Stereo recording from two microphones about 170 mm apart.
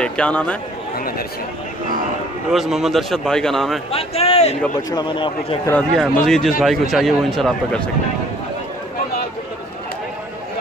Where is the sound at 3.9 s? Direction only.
35° left (ahead or behind).